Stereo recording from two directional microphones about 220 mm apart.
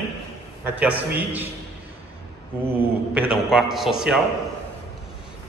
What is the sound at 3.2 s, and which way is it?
A man's voice, 5° right (ahead or behind).